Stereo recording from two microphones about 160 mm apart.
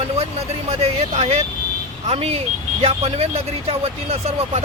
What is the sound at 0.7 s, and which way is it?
Speech, 40° right (ahead or behind).